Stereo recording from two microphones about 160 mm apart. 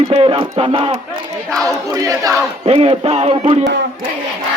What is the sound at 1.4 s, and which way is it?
Crowd, 5° left (ahead or behind).